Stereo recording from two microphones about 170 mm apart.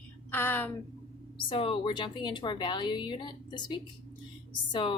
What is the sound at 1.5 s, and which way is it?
A woman's voice, 30° left (ahead or behind).